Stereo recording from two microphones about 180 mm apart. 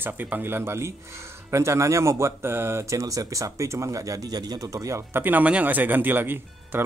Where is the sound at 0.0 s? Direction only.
10° right (ahead or behind).